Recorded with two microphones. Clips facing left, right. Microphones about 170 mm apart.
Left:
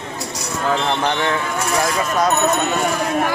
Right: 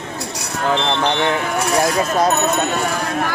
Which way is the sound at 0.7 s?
25° right (ahead or behind).